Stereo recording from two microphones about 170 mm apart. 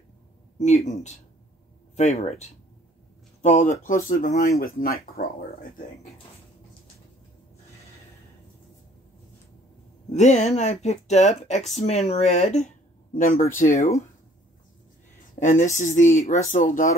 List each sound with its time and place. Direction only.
0.6 s speech: 40° left (ahead or behind)
4.6 s speech: 60° left (ahead or behind)
10.1 s speech: 40° left (ahead or behind)
13.1 s speech: 50° left (ahead or behind)
15.3 s speech: 50° left (ahead or behind)